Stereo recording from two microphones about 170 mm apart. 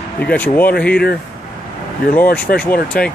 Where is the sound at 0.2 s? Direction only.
10° left (ahead or behind).